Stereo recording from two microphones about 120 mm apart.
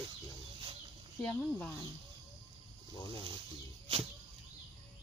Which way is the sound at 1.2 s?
10° left (ahead or behind).